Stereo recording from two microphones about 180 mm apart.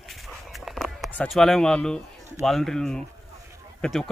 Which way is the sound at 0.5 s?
Centre (ahead or behind).